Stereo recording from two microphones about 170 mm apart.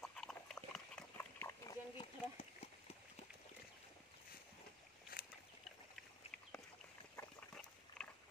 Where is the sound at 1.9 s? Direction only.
35° left (ahead or behind).